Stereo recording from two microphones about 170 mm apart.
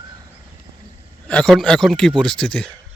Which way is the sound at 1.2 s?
5° left (ahead or behind).